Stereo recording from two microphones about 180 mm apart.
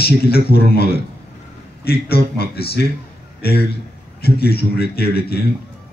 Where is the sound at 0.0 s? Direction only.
60° left (ahead or behind).